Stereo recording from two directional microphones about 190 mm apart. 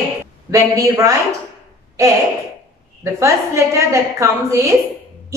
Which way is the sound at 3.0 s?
15° right (ahead or behind).